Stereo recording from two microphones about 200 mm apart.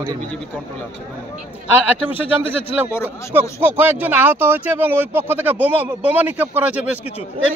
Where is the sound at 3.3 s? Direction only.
10° right (ahead or behind).